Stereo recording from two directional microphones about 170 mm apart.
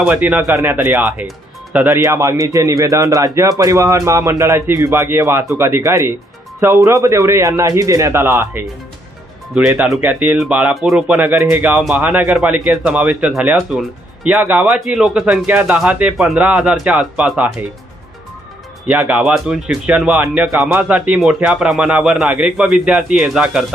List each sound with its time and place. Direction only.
0.0 s speech: 10° right (ahead or behind)
18.9 s speech: 10° right (ahead or behind)